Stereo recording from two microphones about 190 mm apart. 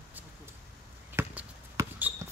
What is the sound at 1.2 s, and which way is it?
Basketball bounce, 10° right (ahead or behind).